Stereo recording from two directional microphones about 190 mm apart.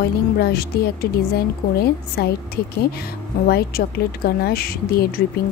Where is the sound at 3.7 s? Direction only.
55° left (ahead or behind).